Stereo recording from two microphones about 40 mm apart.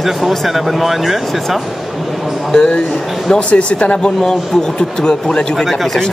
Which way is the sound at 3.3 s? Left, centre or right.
Left.